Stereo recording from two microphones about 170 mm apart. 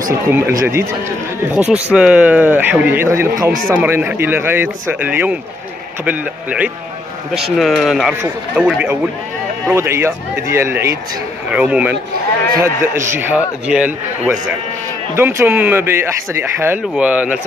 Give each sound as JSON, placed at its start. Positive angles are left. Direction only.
{"t": 0.3, "sound": "a man's voice", "side_deg": -15}